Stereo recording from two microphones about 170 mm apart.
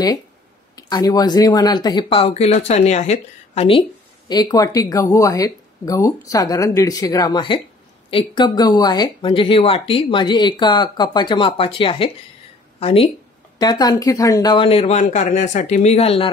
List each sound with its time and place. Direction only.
0.7 s speech: 25° left (ahead or behind)
4.3 s speech: 25° left (ahead or behind)
13.6 s speech: 25° left (ahead or behind)